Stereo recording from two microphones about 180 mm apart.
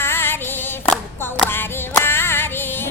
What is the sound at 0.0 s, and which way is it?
Female singing, 10° left (ahead or behind).